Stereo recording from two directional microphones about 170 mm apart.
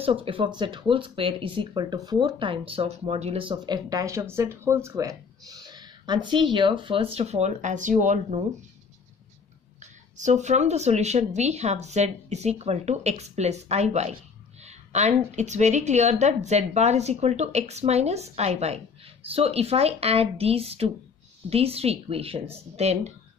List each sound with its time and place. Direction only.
0.0 s speech: 35° right (ahead or behind)
9.8 s speech: 45° right (ahead or behind)